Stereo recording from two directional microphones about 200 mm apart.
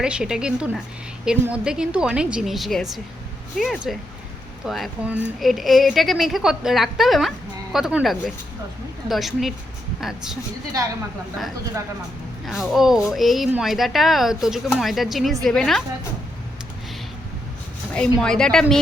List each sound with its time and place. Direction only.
0.0 s a woman's voice: 5° right (ahead or behind)
3.9 s a woman's voice: centre (ahead or behind)
12.5 s a woman's voice: centre (ahead or behind)
17.9 s a woman's voice: 5° left (ahead or behind)